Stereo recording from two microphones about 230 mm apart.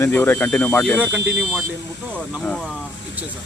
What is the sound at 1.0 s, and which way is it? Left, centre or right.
Speech, centre.